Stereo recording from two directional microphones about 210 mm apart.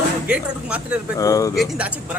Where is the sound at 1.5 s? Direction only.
5° right (ahead or behind).